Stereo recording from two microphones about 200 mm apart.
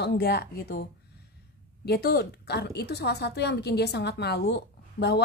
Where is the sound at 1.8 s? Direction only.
55° left (ahead or behind).